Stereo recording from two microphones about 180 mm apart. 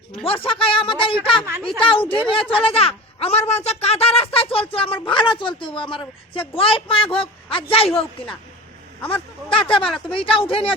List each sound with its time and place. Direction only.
0.3 s a man's voice: 30° left (ahead or behind)
9.6 s a man's voice: 30° left (ahead or behind)
9.8 s speech: 5° left (ahead or behind)
10.2 s a man's voice: 30° left (ahead or behind)